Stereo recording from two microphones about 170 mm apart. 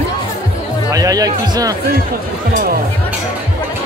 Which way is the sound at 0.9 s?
20° right (ahead or behind).